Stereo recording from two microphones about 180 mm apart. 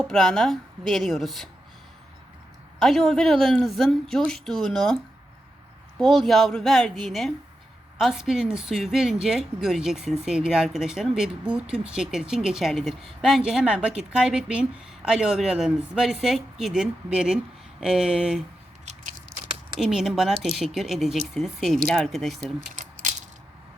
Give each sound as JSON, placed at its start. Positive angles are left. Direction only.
{"t": 0.0, "sound": "a woman's voice", "side_deg": 5}
{"t": 2.7, "sound": "a woman's voice", "side_deg": 0}
{"t": 6.0, "sound": "a woman's voice", "side_deg": 0}
{"t": 18.9, "sound": "biting", "side_deg": -40}
{"t": 19.8, "sound": "a woman's voice", "side_deg": 0}
{"t": 22.7, "sound": "coin", "side_deg": -45}